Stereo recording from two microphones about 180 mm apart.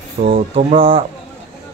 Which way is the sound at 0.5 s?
30° right (ahead or behind).